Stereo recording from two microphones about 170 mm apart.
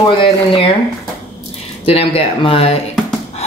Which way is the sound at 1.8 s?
35° left (ahead or behind).